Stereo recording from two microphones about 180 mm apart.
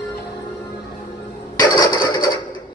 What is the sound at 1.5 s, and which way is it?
Mechanisms, 20° left (ahead or behind).